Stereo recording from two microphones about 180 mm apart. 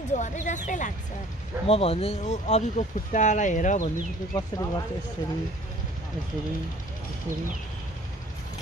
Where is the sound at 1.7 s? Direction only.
35° left (ahead or behind).